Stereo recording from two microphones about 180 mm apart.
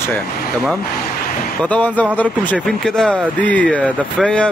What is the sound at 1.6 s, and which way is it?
Speech, 10° left (ahead or behind).